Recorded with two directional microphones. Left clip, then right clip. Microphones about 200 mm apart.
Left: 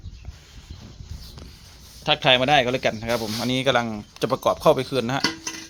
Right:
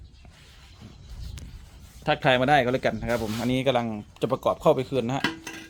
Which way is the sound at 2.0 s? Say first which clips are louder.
Left 3 dB; 20° right (ahead or behind).